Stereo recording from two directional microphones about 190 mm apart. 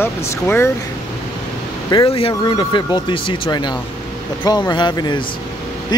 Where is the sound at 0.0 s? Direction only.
10° left (ahead or behind).